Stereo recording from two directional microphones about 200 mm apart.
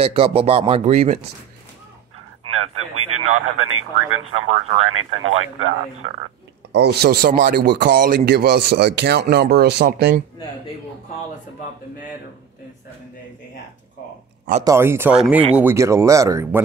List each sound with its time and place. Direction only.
0.0 s speech: 30° right (ahead or behind)
2.4 s a sound: 90° right
3.2 s speech: 90° right
6.7 s speech: 55° right (ahead or behind)
14.6 s speech: 15° right (ahead or behind)